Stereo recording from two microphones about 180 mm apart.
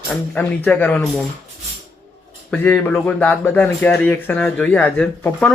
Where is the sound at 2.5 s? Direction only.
10° left (ahead or behind).